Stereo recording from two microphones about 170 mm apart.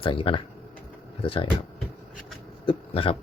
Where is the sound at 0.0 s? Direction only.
30° left (ahead or behind).